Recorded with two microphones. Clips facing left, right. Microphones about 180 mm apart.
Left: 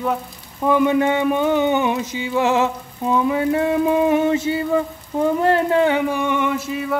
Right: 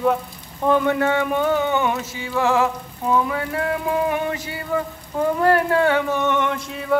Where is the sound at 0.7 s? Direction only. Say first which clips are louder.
Left 2 dB; 15° left (ahead or behind).